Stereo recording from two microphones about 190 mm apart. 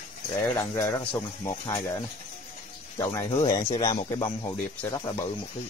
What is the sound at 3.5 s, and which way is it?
Speech, 40° left (ahead or behind).